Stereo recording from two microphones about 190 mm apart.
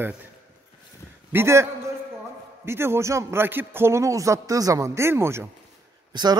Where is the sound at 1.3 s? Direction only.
15° right (ahead or behind).